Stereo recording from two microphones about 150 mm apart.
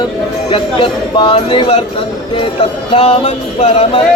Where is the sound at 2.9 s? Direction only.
40° left (ahead or behind).